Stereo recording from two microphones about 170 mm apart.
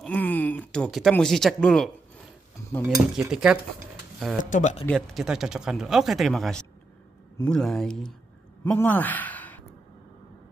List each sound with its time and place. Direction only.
0.0 s a sound: 10° left (ahead or behind)
1.1 s speech: 5° left (ahead or behind)
2.9 s speech: 5° right (ahead or behind)
4.5 s speech: 45° left (ahead or behind)
4.8 s speech: centre (ahead or behind)